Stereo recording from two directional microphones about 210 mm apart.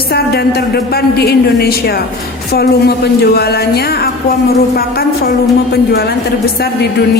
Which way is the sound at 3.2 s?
50° left (ahead or behind).